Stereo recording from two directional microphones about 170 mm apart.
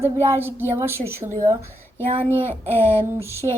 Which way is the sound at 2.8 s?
15° left (ahead or behind).